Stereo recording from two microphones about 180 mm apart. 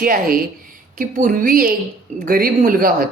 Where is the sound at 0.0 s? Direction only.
55° right (ahead or behind).